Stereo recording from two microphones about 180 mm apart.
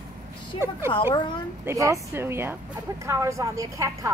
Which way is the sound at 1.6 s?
15° right (ahead or behind).